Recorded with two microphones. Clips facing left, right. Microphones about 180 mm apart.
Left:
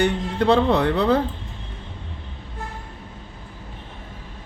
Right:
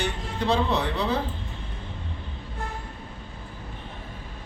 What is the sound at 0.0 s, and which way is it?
Speech, 60° left (ahead or behind).